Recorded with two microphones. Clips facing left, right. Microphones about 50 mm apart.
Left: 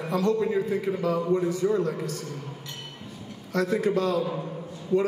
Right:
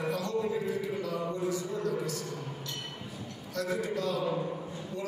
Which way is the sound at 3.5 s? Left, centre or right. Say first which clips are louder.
Left 8 dB; left.